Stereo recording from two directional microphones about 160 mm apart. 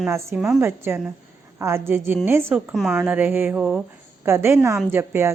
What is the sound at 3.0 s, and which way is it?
A woman's voice, 10° right (ahead or behind).